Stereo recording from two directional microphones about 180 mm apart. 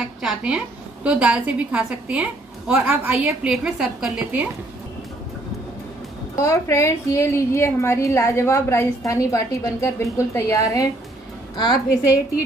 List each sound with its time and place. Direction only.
0.2 s a woman's voice: 5° right (ahead or behind)
6.3 s a woman's voice: 15° left (ahead or behind)